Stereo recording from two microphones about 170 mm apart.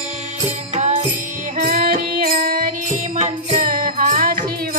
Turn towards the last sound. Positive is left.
turn(degrees=-50)  # may be behind; listen again after turning